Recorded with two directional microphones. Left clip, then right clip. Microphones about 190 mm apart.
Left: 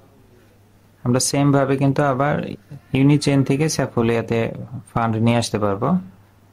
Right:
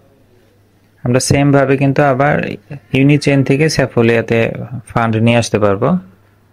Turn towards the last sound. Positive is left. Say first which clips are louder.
# right 8 dB
turn(degrees=-20)  # may be behind; listen again after turning